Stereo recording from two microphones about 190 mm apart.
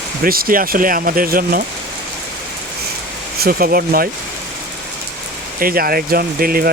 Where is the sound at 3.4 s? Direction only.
50° right (ahead or behind).